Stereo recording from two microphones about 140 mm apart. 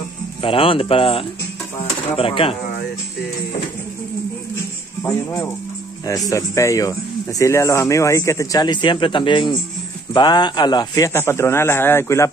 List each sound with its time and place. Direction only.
0.4 s speech: 40° left (ahead or behind)
5.0 s speech: 25° left (ahead or behind)
11.1 s a man's voice: 20° left (ahead or behind)